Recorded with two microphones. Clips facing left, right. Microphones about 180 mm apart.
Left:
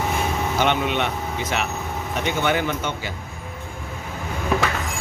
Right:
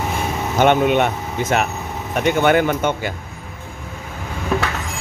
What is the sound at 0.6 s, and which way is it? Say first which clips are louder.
Speech: right 8 dB; 50° right (ahead or behind).